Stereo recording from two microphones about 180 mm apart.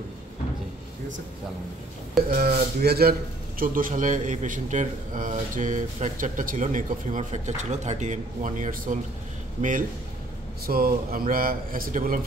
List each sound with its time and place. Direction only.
2.3 s a man's voice: 60° right (ahead or behind)